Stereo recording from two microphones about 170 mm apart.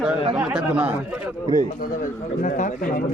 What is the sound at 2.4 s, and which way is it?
Speech, 50° left (ahead or behind).